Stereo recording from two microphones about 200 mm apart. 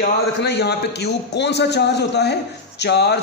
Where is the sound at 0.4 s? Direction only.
55° left (ahead or behind).